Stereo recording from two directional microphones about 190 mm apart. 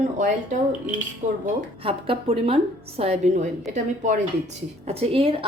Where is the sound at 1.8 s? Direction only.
30° right (ahead or behind).